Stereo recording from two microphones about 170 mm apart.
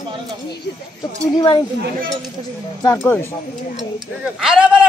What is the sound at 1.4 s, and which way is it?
Speech, 25° left (ahead or behind).